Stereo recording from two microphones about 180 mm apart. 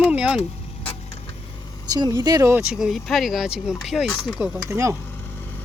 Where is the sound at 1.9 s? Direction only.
20° right (ahead or behind).